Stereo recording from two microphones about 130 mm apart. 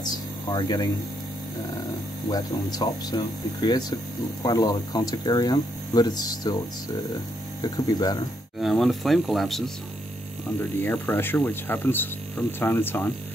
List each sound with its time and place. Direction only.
0.1 s a sound: 30° left (ahead or behind)
2.3 s speech: 30° left (ahead or behind)
7.6 s speech: 30° left (ahead or behind)
8.5 s speech: centre (ahead or behind)
10.8 s speech: 15° left (ahead or behind)